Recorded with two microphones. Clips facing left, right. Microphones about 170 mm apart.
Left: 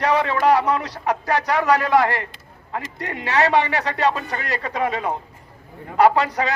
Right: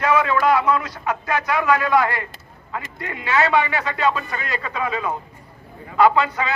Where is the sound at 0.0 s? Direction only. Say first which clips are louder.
Even; 35° left (ahead or behind).